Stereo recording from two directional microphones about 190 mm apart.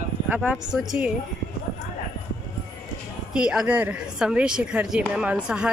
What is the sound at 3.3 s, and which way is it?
A woman's voice, 5° right (ahead or behind).